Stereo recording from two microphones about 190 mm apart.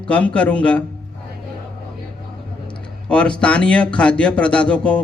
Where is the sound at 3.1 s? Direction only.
5° left (ahead or behind).